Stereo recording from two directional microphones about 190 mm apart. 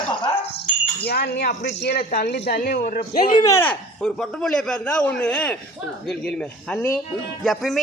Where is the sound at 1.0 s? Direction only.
60° left (ahead or behind).